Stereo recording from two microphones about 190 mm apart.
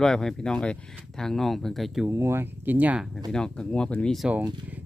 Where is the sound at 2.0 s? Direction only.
15° right (ahead or behind).